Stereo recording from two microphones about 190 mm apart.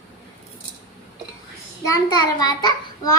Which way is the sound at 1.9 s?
20° left (ahead or behind).